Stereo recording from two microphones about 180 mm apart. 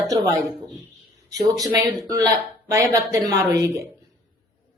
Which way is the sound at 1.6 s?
20° right (ahead or behind).